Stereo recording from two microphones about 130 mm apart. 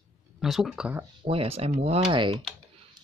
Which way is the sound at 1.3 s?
45° right (ahead or behind).